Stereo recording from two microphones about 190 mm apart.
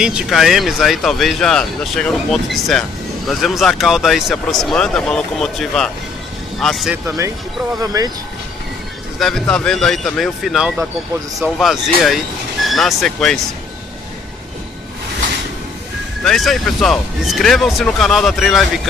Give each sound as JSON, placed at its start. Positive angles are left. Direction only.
{"t": 0.0, "sound": "speech", "side_deg": 0}
{"t": 7.8, "sound": "speech", "side_deg": -20}
{"t": 9.2, "sound": "speech", "side_deg": 5}
{"t": 16.3, "sound": "speech", "side_deg": 0}